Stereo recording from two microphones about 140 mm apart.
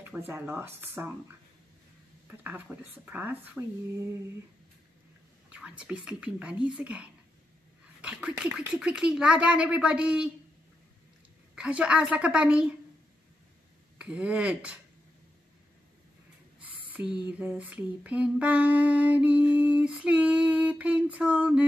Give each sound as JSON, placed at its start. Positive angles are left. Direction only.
{"t": 0.3, "sound": "lullaby", "side_deg": -15}
{"t": 2.2, "sound": "lullaby", "side_deg": -15}
{"t": 5.5, "sound": "lullaby", "side_deg": -10}
{"t": 11.5, "sound": "lullaby", "side_deg": -10}
{"t": 13.9, "sound": "lullaby", "side_deg": -10}
{"t": 16.9, "sound": "a sound", "side_deg": -10}
{"t": 17.3, "sound": "lullaby", "side_deg": -10}